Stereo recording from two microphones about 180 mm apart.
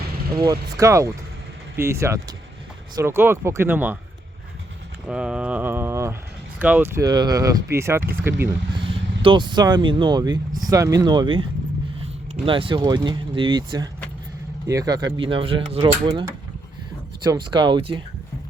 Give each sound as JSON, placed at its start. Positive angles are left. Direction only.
{"t": 0.3, "sound": "speech", "side_deg": -20}
{"t": 5.0, "sound": "speech", "side_deg": -5}
{"t": 8.7, "sound": "speech", "side_deg": -30}
{"t": 17.2, "sound": "speech", "side_deg": -25}